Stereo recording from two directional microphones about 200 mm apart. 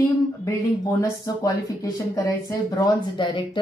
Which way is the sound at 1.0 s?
15° left (ahead or behind).